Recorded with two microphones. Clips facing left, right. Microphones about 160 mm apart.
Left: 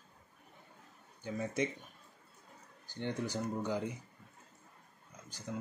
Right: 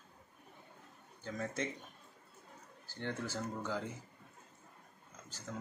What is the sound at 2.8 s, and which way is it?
Speech, 15° left (ahead or behind).